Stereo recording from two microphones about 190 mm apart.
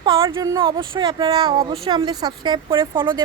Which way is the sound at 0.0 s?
25° right (ahead or behind).